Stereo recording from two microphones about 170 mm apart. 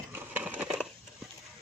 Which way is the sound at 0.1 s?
10° right (ahead or behind).